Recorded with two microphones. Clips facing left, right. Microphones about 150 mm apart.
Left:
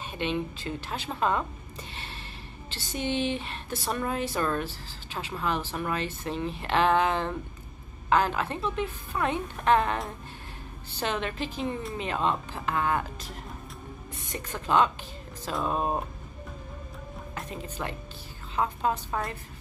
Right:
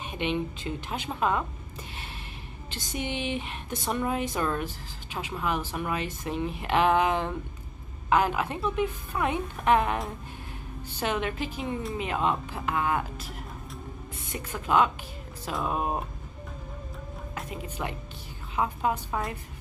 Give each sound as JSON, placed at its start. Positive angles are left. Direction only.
{"t": 0.0, "sound": "a woman's voice", "side_deg": -15}
{"t": 2.7, "sound": "a woman's voice", "side_deg": -15}
{"t": 11.0, "sound": "a woman's voice", "side_deg": -10}
{"t": 17.4, "sound": "a woman's voice", "side_deg": -10}